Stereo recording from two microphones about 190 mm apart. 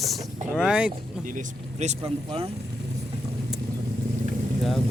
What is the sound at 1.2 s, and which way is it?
Speech, 45° right (ahead or behind).